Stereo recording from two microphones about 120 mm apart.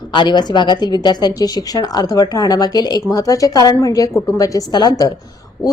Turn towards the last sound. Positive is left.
turn(degrees=35)  # may be behind; listen again after turning